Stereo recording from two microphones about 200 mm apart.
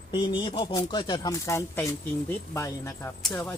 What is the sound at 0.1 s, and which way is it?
Speech, 20° left (ahead or behind).